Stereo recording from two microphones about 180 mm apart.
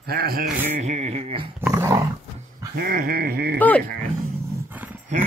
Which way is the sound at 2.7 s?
55° right (ahead or behind).